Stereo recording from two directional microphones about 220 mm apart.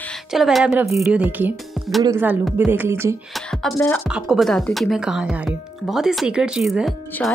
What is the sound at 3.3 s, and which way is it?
Speech, centre (ahead or behind).